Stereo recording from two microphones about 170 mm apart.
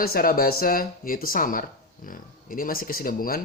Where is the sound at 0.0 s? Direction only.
60° left (ahead or behind).